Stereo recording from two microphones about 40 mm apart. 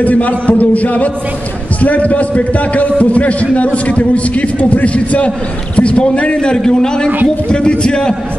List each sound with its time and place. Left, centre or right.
0.0 s a man's voice: left